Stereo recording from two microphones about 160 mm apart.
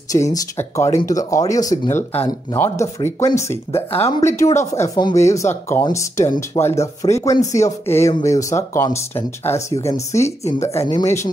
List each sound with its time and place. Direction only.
0.1 s speech: 20° left (ahead or behind)